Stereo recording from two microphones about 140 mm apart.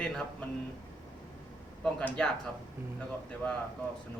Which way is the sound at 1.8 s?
5° left (ahead or behind).